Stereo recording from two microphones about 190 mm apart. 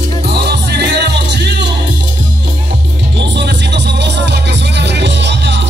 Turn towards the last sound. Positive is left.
turn(degrees=-65)  # may be behind; listen again after turning